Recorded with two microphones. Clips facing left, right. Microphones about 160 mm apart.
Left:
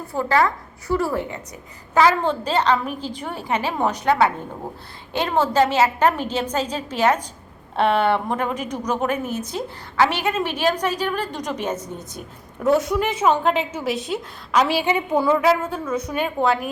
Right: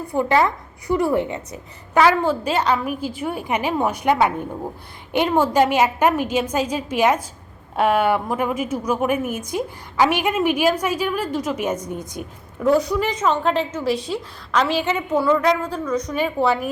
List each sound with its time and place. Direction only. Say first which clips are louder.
0.2 s a woman's voice: right 1 dB; 20° right (ahead or behind)
1.9 s a woman's voice: right 1 dB; 10° right (ahead or behind)
12.6 s a woman's voice: right 1 dB; centre (ahead or behind)